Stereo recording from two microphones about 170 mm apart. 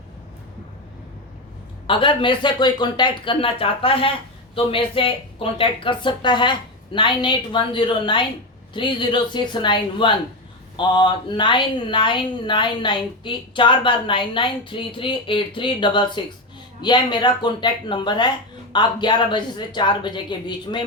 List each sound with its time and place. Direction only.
1.9 s speech: 30° left (ahead or behind)